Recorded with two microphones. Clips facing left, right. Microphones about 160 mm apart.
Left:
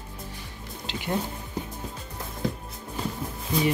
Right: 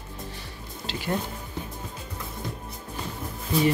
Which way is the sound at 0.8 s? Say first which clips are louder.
Even; 20° left (ahead or behind).